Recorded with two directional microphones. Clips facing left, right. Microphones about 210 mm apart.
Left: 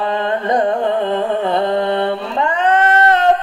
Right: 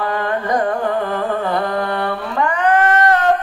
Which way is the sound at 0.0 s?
25° left (ahead or behind).